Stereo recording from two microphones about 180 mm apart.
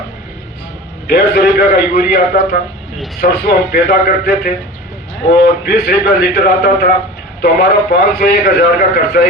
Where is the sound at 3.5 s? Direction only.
65° left (ahead or behind).